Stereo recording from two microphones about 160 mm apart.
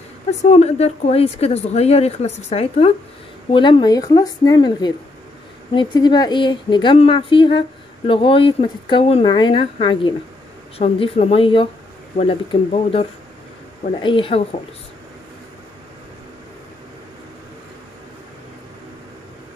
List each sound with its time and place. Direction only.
0.3 s speech: 45° left (ahead or behind)